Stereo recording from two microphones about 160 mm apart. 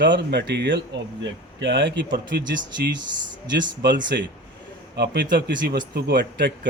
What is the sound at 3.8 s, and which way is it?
A man's voice, 90° right.